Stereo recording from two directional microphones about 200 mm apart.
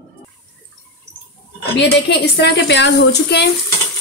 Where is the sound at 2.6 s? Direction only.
60° left (ahead or behind).